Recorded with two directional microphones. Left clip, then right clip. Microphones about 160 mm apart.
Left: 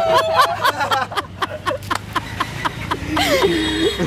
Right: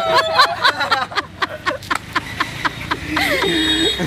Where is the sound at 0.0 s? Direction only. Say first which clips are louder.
Even; 5° left (ahead or behind).